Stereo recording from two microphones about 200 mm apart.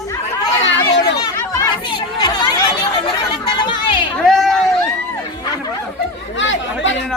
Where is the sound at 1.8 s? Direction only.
25° left (ahead or behind).